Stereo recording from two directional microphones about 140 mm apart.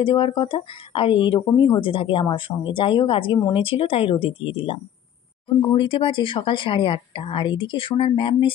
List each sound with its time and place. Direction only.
0.0 s speech: 40° left (ahead or behind)